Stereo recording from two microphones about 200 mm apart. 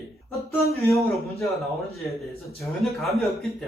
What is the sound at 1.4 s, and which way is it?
A man's voice, centre (ahead or behind).